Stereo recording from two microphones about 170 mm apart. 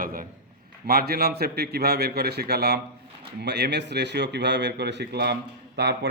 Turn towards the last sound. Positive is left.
turn(degrees=-80)